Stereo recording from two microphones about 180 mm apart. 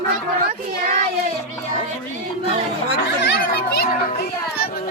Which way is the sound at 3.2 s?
60° left (ahead or behind).